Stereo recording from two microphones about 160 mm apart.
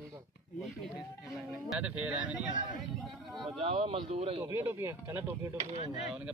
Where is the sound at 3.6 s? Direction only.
35° right (ahead or behind).